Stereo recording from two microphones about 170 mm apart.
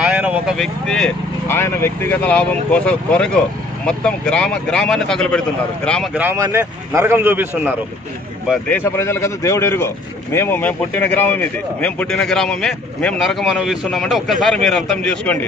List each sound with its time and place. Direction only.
0.0 s speech: 5° right (ahead or behind)
6.1 s a man's voice: 15° right (ahead or behind)
8.6 s speech: 10° left (ahead or behind)